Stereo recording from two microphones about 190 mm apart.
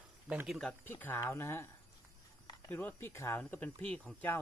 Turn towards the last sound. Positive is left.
turn(degrees=5)  # may be behind; listen again after turning